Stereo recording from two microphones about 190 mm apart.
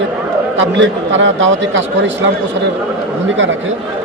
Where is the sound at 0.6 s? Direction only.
80° right.